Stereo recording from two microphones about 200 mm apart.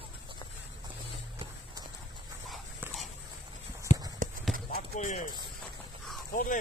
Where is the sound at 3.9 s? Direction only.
35° left (ahead or behind).